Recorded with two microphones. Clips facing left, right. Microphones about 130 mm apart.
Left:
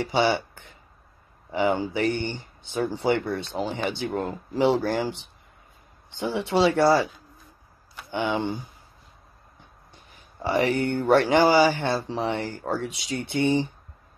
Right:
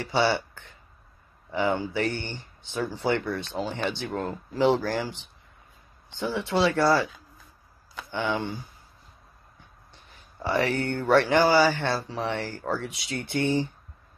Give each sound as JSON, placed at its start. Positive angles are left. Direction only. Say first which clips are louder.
{"t": 0.0, "sound": "speech", "louder": "left 2 dB", "side_deg": 15}
{"t": 8.1, "sound": "speech", "louder": "left 3 dB", "side_deg": 15}
{"t": 10.4, "sound": "speech", "louder": "left 3 dB", "side_deg": 15}